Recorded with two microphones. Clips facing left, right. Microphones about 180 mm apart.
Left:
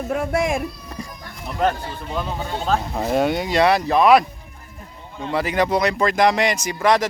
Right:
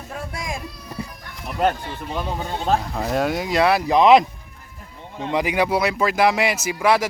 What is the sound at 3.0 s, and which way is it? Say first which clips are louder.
Speech: left 2 dB; centre (ahead or behind).